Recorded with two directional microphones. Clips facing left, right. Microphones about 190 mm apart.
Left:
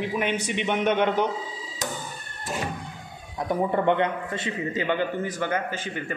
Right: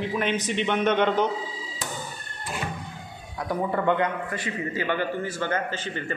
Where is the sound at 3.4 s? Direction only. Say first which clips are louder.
Left 2 dB; 25° left (ahead or behind).